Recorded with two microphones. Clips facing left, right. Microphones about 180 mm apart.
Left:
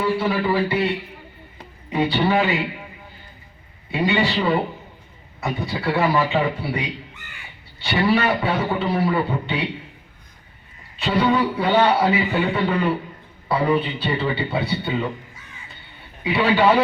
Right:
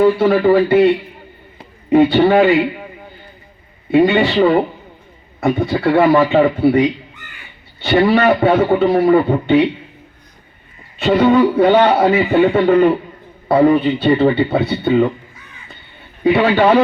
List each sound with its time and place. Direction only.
0.0 s a man's voice: 50° right (ahead or behind)
3.9 s a man's voice: 55° right (ahead or behind)
11.0 s a man's voice: 50° right (ahead or behind)
16.2 s a man's voice: 55° right (ahead or behind)